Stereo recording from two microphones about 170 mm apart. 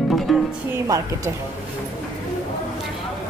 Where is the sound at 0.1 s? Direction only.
Centre (ahead or behind).